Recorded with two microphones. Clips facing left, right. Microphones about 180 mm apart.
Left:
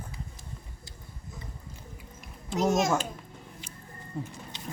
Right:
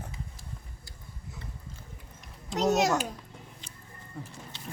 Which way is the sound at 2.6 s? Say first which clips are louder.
Even; 70° right (ahead or behind).